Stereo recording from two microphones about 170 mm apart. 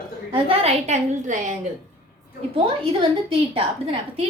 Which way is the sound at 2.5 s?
30° right (ahead or behind).